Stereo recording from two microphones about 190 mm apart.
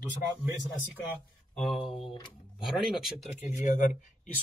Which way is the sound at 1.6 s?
Centre (ahead or behind).